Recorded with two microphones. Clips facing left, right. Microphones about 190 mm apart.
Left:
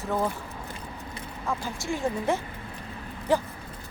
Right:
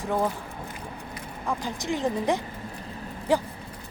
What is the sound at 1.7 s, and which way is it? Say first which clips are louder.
Speech: right 3 dB; 20° right (ahead or behind).